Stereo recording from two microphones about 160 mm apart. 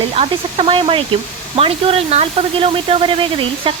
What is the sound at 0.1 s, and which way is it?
Speech, 40° right (ahead or behind).